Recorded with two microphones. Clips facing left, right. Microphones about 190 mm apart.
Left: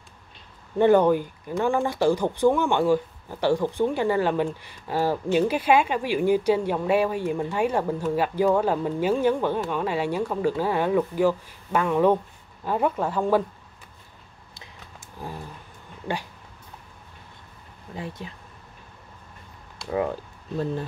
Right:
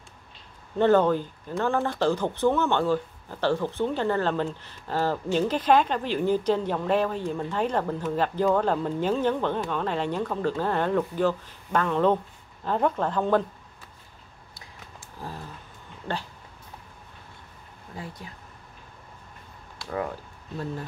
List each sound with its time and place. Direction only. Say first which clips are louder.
0.7 s speech: left 2 dB; 15° left (ahead or behind)
15.2 s a sound: left 2 dB; 15° left (ahead or behind)
17.9 s speech: left 4 dB; 25° left (ahead or behind)